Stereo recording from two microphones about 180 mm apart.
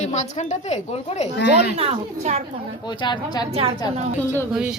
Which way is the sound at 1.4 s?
70° left (ahead or behind).